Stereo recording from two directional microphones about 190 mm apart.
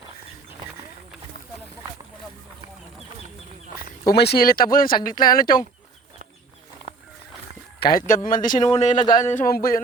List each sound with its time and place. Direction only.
4.0 s speech: 60° left (ahead or behind)
7.8 s speech: 50° left (ahead or behind)
9.3 s speech: 50° left (ahead or behind)